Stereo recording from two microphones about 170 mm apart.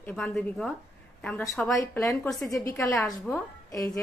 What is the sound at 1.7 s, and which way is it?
A woman's voice, 20° left (ahead or behind).